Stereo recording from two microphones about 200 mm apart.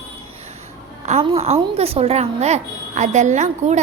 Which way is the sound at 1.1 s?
30° right (ahead or behind).